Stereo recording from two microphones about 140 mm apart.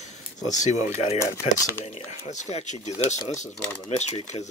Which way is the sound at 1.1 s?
20° left (ahead or behind).